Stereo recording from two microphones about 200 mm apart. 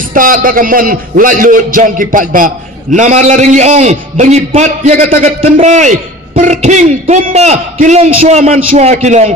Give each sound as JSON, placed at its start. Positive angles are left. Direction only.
{"t": 0.1, "sound": "a man's voice", "side_deg": -45}